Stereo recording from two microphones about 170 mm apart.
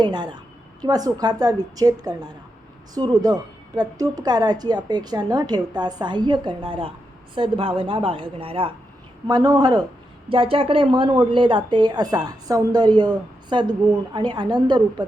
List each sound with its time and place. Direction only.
0.0 s a woman's voice: 25° right (ahead or behind)
9.2 s a woman's voice: 20° right (ahead or behind)